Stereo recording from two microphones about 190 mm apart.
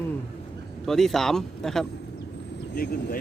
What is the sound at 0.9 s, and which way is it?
Speech, centre (ahead or behind).